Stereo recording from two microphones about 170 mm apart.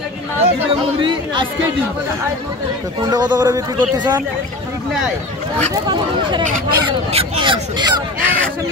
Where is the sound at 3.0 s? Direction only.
20° right (ahead or behind).